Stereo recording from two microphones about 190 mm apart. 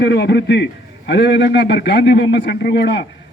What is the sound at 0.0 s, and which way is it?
A man's voice, 60° left (ahead or behind).